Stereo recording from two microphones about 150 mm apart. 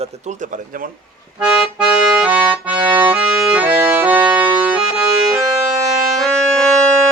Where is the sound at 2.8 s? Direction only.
30° right (ahead or behind).